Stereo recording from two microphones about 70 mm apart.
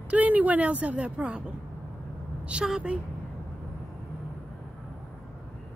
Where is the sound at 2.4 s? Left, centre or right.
Centre.